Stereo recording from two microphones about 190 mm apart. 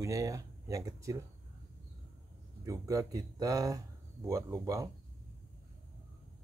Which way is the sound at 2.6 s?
15° right (ahead or behind).